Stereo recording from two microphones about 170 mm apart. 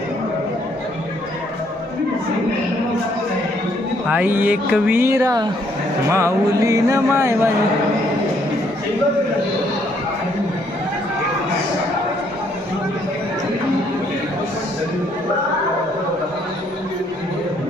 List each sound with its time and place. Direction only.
4.1 s speech: 10° right (ahead or behind)